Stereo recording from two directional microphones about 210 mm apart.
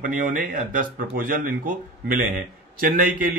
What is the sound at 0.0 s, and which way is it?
Speech, 40° right (ahead or behind).